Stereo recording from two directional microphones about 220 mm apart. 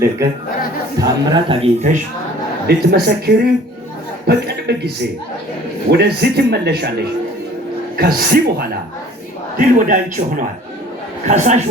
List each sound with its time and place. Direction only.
0.9 s a man's voice: 20° right (ahead or behind)
2.6 s a man's voice: 45° right (ahead or behind)